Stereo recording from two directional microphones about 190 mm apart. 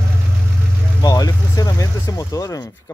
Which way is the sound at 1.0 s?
20° left (ahead or behind).